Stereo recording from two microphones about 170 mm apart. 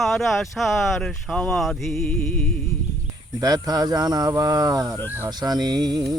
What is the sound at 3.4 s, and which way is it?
Speech, 20° right (ahead or behind).